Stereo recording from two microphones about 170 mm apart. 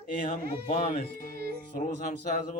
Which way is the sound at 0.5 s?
40° left (ahead or behind).